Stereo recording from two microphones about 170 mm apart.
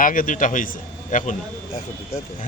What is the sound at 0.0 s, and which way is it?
Speech, 50° left (ahead or behind).